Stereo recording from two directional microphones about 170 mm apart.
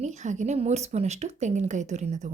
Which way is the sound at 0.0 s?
45° right (ahead or behind).